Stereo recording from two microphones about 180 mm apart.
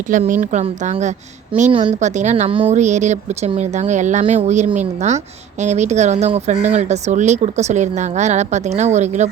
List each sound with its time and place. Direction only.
0.1 s a woman's voice: 45° right (ahead or behind)